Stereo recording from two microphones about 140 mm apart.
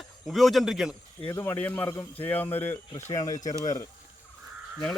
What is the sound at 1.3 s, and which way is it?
Speech, 20° left (ahead or behind).